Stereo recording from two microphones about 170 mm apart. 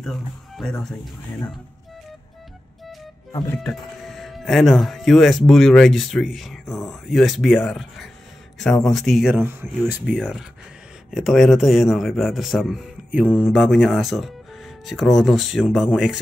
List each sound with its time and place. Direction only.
0.6 s a man's voice: 5° left (ahead or behind)
3.3 s speech: 20° left (ahead or behind)
3.5 s a man's voice: centre (ahead or behind)